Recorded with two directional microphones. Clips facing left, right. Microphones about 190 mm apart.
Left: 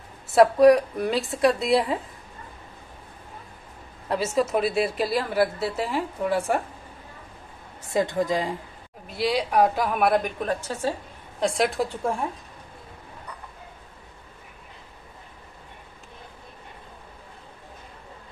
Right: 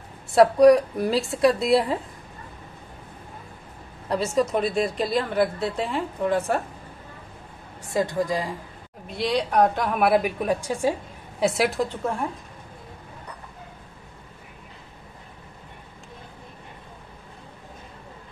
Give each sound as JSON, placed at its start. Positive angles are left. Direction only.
{"t": 0.3, "sound": "a woman's voice", "side_deg": 0}
{"t": 4.1, "sound": "a woman's voice", "side_deg": 5}
{"t": 7.8, "sound": "a woman's voice", "side_deg": 20}
{"t": 9.0, "sound": "a woman's voice", "side_deg": 5}